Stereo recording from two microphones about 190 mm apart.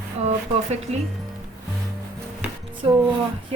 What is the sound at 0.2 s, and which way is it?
Speech, 35° right (ahead or behind).